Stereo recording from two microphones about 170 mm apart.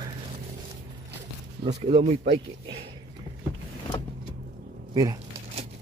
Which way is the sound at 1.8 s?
40° right (ahead or behind).